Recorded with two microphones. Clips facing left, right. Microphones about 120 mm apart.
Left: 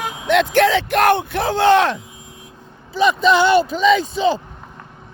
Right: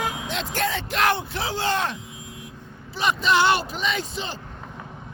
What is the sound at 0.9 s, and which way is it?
Speech, 55° left (ahead or behind).